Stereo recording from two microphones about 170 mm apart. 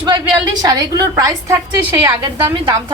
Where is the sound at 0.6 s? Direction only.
25° right (ahead or behind).